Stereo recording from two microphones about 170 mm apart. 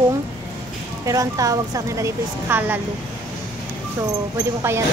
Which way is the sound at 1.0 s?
20° right (ahead or behind).